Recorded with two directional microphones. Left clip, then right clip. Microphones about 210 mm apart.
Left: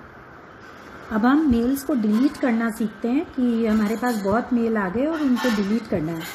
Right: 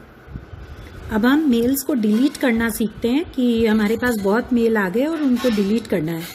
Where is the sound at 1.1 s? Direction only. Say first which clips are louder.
Right 2 dB; 25° right (ahead or behind).